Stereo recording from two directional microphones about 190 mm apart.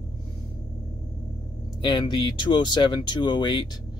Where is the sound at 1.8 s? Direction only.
25° left (ahead or behind).